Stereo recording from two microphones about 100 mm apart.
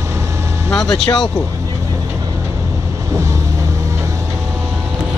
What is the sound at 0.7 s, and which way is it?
Vehicle, 5° left (ahead or behind).